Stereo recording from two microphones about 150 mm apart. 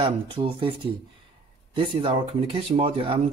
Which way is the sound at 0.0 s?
35° right (ahead or behind).